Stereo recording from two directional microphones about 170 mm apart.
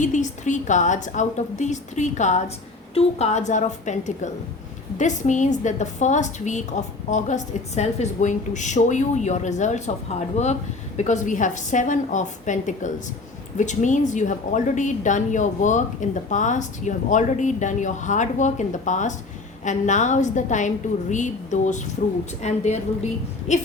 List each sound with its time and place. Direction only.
0.0 s a woman's voice: 45° left (ahead or behind)